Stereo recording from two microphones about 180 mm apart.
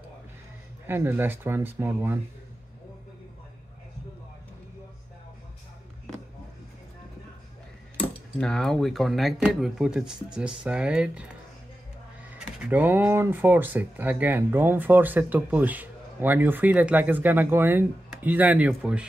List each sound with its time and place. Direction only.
0.8 s speech: 10° right (ahead or behind)
8.4 s speech: 5° left (ahead or behind)
12.4 s speech: 5° right (ahead or behind)